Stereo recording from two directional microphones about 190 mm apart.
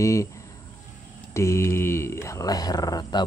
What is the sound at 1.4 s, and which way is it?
Speech, 15° left (ahead or behind).